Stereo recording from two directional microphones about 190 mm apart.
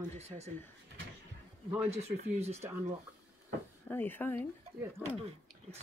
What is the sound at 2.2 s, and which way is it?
Speech, 35° right (ahead or behind).